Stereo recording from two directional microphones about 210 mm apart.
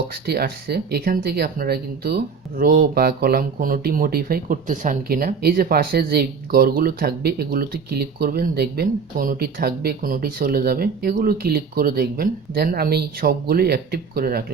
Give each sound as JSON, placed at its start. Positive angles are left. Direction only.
{"t": 0.1, "sound": "speech", "side_deg": -45}